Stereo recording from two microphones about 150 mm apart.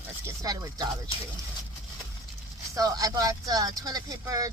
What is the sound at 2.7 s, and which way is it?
Speech, 25° right (ahead or behind).